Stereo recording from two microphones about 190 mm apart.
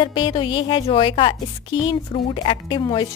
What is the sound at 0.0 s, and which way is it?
A woman's voice, 25° left (ahead or behind).